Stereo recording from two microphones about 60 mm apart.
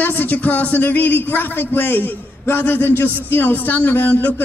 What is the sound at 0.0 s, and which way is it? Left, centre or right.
Speech, left.